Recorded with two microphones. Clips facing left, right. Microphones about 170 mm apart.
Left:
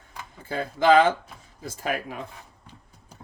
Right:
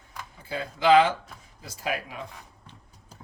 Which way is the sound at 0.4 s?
50° left (ahead or behind).